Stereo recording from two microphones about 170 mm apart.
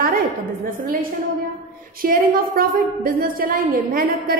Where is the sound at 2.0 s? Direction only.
55° right (ahead or behind).